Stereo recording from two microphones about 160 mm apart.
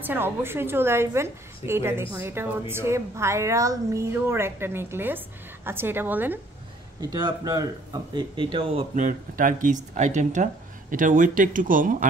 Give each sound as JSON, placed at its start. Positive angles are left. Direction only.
{"t": 0.0, "sound": "a woman's voice", "side_deg": -15}
{"t": 7.0, "sound": "speech", "side_deg": -25}
{"t": 8.9, "sound": "speech", "side_deg": -55}